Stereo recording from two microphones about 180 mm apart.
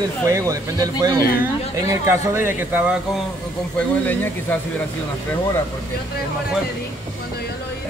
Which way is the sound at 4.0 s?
10° left (ahead or behind).